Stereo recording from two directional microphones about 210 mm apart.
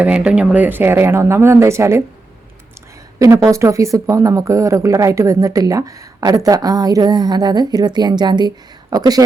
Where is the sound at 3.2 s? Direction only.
15° right (ahead or behind).